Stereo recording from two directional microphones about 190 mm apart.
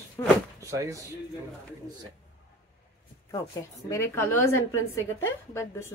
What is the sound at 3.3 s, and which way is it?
Speech, 15° left (ahead or behind).